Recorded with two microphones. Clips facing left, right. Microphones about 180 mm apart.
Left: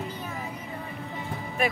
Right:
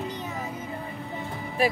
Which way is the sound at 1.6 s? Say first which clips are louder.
Right 3 dB; 30° right (ahead or behind).